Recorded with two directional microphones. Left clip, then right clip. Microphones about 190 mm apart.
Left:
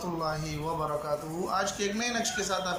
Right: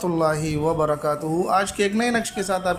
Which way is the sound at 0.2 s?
50° right (ahead or behind).